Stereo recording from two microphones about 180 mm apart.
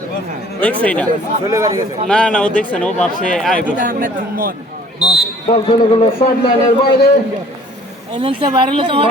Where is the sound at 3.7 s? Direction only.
50° right (ahead or behind).